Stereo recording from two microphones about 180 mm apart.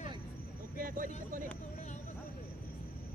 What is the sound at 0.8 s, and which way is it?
Speech, 50° right (ahead or behind).